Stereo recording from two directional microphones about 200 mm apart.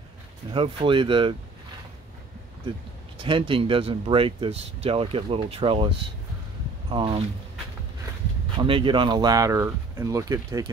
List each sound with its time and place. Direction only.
0.5 s speech: 25° right (ahead or behind)
3.2 s speech: 25° right (ahead or behind)
8.5 s speech: 25° right (ahead or behind)